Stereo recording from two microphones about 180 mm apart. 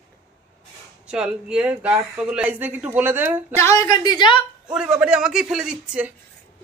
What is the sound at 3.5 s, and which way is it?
Speech, 15° left (ahead or behind).